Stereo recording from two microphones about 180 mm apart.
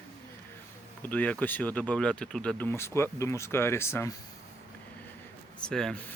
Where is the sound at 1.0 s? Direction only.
10° left (ahead or behind).